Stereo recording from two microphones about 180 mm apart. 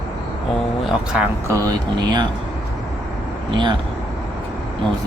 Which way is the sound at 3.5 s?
25° right (ahead or behind).